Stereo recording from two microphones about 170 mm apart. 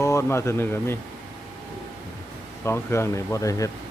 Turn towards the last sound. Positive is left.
turn(degrees=20)  # may be behind; listen again after turning